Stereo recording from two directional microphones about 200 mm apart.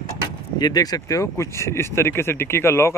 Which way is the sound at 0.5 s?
20° left (ahead or behind).